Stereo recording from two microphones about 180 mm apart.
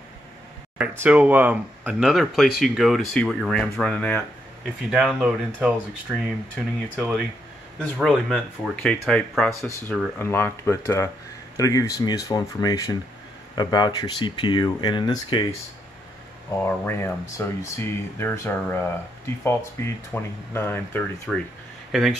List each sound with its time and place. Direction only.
0.7 s speech: 10° right (ahead or behind)
9.6 s speech: 15° left (ahead or behind)
16.6 s speech: 15° left (ahead or behind)